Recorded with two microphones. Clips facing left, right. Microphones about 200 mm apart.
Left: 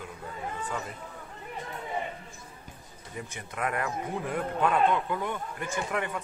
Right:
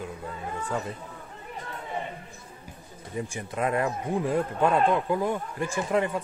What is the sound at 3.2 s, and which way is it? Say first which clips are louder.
Speech: right 5 dB; 25° right (ahead or behind).